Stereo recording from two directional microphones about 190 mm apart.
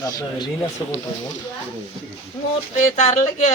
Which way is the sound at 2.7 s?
40° left (ahead or behind).